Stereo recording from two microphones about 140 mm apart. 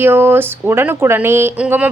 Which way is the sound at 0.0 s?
15° right (ahead or behind).